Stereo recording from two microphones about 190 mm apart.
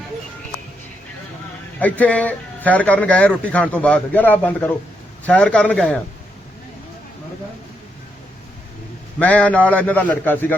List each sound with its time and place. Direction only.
1.8 s a man's voice: 10° left (ahead or behind)
9.1 s a man's voice: 5° left (ahead or behind)